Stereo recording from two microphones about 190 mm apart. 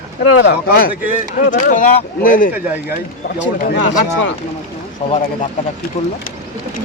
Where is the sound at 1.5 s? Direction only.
45° left (ahead or behind).